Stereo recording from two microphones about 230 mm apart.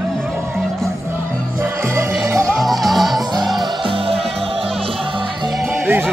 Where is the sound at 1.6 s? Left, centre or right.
Centre.